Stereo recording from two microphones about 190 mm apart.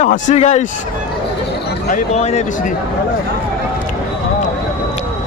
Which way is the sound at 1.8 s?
35° left (ahead or behind).